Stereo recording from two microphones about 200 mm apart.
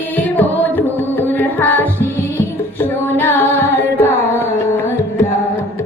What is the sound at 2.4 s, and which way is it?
Music, 10° left (ahead or behind).